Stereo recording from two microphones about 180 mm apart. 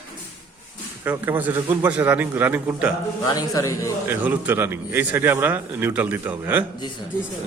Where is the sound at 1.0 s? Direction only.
10° right (ahead or behind).